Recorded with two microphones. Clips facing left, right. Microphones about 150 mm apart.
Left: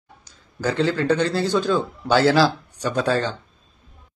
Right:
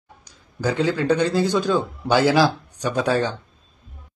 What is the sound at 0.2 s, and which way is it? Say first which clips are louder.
A man's voice: right 1 dB; 15° right (ahead or behind).